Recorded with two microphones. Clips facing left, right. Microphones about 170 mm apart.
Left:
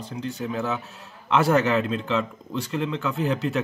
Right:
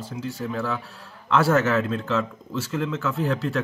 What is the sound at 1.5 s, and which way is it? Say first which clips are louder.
A man's voice: even; centre (ahead or behind).